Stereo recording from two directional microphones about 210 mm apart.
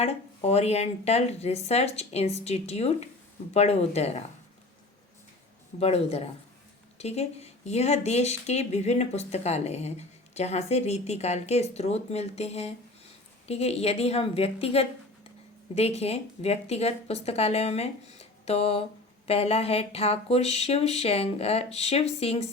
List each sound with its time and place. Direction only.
0.0 s speech: 30° left (ahead or behind)
5.8 s speech: 30° left (ahead or behind)